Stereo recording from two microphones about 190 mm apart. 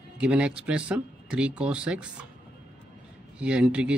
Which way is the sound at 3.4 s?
5° right (ahead or behind).